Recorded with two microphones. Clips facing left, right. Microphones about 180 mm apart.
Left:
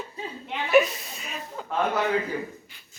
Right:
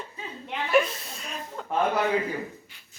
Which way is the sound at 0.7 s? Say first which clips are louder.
Left 3 dB; 5° left (ahead or behind).